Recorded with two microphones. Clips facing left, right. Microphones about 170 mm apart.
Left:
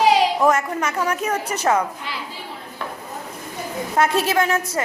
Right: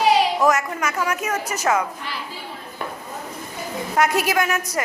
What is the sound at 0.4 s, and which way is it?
Speech, 30° left (ahead or behind).